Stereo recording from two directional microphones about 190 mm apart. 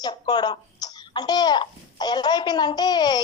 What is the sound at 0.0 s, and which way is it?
A child's voice, 20° left (ahead or behind).